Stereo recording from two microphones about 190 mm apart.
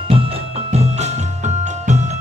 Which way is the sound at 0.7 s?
35° right (ahead or behind).